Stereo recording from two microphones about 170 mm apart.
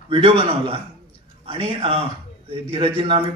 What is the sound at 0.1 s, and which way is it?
A man's voice, 35° right (ahead or behind).